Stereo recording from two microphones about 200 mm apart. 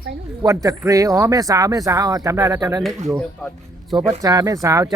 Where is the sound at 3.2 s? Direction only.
5° left (ahead or behind).